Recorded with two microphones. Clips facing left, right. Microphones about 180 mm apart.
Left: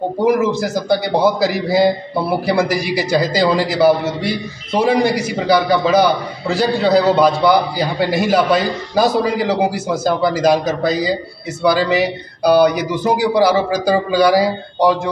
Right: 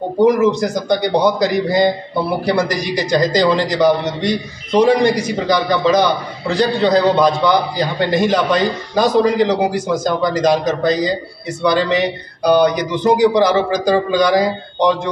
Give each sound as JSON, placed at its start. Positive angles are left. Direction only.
{"t": 0.2, "sound": "a man's voice", "side_deg": 5}